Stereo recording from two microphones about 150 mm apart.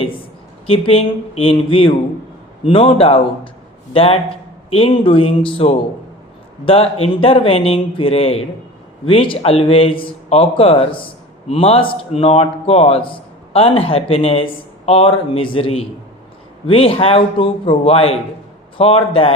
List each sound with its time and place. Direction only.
0.7 s a man's voice: 40° left (ahead or behind)